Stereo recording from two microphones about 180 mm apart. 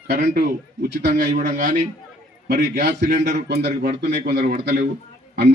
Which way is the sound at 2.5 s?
65° right (ahead or behind).